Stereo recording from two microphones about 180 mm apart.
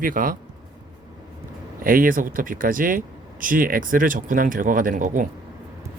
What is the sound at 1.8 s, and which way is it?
Speech, 50° right (ahead or behind).